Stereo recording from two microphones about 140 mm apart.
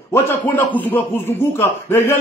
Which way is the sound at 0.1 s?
15° left (ahead or behind).